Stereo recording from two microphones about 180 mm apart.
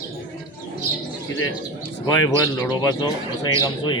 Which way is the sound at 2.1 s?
20° left (ahead or behind).